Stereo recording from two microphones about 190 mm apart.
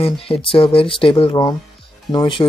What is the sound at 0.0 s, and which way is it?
Speech, 30° left (ahead or behind).